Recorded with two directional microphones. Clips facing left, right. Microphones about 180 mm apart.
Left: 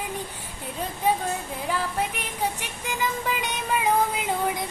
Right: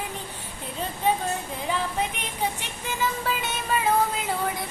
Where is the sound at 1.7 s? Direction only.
10° left (ahead or behind).